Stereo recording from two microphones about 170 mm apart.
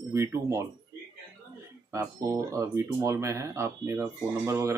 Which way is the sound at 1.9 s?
20° right (ahead or behind).